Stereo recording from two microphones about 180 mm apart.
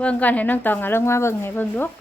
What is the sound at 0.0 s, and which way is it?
Speech, 10° left (ahead or behind).